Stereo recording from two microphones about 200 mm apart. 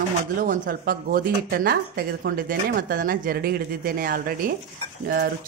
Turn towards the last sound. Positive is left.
turn(degrees=-50)  # may be behind; listen again after turning